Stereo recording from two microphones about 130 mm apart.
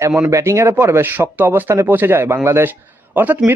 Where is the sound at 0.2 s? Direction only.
25° right (ahead or behind).